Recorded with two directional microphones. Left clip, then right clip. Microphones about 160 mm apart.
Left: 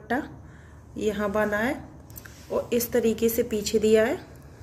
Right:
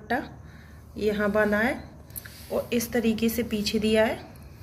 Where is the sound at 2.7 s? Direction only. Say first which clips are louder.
Left 5 dB; 45° left (ahead or behind).